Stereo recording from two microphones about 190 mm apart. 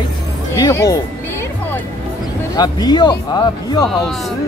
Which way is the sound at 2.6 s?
20° left (ahead or behind).